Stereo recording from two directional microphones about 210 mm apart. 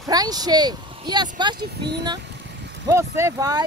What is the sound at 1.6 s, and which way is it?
Speech, 55° right (ahead or behind).